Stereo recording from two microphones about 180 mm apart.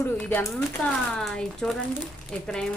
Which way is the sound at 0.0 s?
10° left (ahead or behind).